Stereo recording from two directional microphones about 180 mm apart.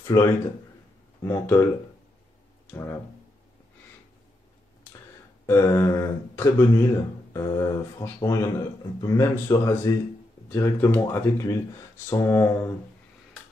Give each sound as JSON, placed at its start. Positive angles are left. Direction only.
{"t": 0.0, "sound": "speech", "side_deg": 15}
{"t": 2.6, "sound": "speech", "side_deg": 15}
{"t": 5.5, "sound": "speech", "side_deg": 15}